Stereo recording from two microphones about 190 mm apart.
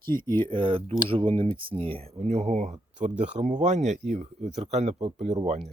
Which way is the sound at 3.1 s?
5° right (ahead or behind).